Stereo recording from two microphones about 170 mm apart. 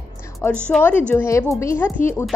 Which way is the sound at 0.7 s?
10° left (ahead or behind).